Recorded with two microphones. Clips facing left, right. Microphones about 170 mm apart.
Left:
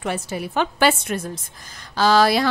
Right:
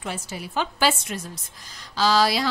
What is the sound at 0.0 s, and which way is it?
Speech, 60° left (ahead or behind).